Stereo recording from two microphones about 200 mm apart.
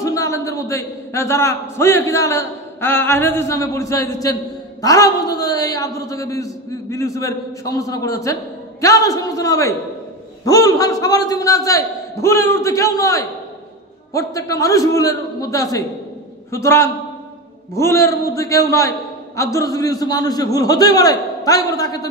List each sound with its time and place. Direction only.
0.0 s a man's voice: 15° left (ahead or behind)